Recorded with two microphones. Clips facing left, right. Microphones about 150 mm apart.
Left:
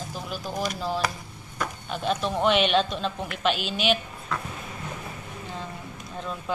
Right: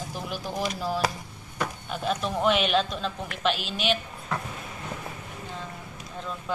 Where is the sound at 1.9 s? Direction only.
5° right (ahead or behind).